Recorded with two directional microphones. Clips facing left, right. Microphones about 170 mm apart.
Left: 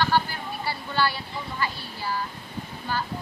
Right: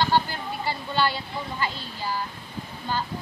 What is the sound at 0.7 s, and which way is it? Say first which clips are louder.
Speech: right 1 dB; 15° right (ahead or behind).